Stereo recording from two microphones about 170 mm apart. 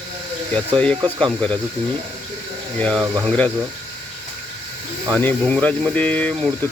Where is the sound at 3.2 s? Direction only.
5° left (ahead or behind).